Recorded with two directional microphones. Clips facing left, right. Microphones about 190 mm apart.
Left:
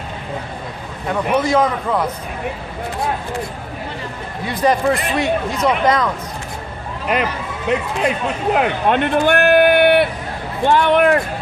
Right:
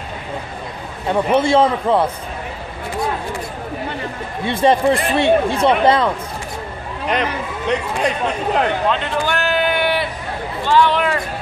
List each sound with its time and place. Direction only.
1.0 s speech: 30° right (ahead or behind)
4.5 s speech: 25° right (ahead or behind)
7.1 s a man's voice: 5° left (ahead or behind)
8.8 s a sound: 55° left (ahead or behind)
10.6 s speech: 55° left (ahead or behind)